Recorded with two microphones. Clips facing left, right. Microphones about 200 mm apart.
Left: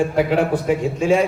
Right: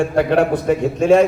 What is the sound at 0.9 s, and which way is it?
Speech, 65° right (ahead or behind).